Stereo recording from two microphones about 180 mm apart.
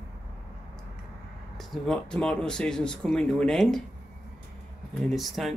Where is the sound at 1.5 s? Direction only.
Centre (ahead or behind).